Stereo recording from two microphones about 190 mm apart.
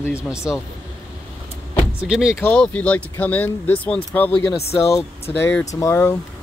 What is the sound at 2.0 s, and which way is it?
Speech, 5° right (ahead or behind).